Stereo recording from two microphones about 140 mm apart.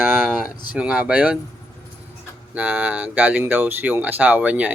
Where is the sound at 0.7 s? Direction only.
10° right (ahead or behind).